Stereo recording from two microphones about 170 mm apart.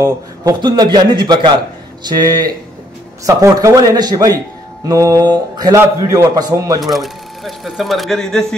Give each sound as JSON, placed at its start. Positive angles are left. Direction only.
{"t": 0.0, "sound": "speech", "side_deg": -20}
{"t": 6.8, "sound": "speech", "side_deg": 0}